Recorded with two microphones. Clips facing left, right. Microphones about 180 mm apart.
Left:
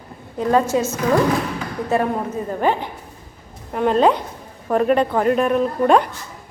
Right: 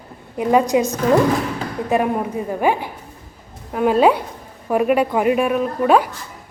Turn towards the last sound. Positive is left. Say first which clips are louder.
# even
turn(degrees=-5)  # may be behind; listen again after turning